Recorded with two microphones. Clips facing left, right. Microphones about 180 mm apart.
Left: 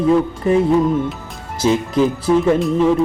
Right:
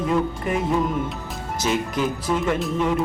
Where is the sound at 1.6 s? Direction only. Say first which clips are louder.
Left 8 dB; 30° left (ahead or behind).